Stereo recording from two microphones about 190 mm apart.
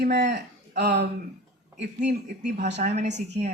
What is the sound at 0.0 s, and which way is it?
Speech, 65° right (ahead or behind).